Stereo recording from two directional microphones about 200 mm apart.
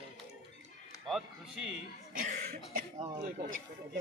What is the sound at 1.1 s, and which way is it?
Speech, centre (ahead or behind).